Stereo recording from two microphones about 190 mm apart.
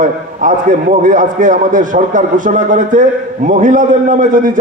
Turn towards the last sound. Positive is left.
turn(degrees=-45)  # may be behind; listen again after turning